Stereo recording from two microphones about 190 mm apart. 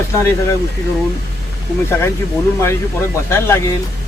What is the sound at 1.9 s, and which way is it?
Speech, 15° left (ahead or behind).